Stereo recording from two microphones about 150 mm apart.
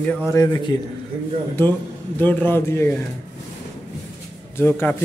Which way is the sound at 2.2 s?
10° left (ahead or behind).